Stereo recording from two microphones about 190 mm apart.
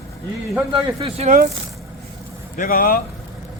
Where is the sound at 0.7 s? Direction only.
30° right (ahead or behind).